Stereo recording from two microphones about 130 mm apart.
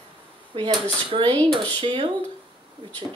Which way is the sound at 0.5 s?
40° right (ahead or behind).